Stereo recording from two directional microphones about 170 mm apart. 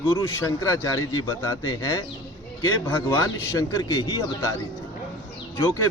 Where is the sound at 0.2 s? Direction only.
20° left (ahead or behind).